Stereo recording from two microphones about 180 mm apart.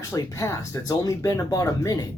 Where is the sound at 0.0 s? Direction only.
20° left (ahead or behind).